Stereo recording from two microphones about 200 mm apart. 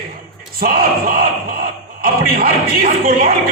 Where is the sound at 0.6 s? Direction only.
50° right (ahead or behind).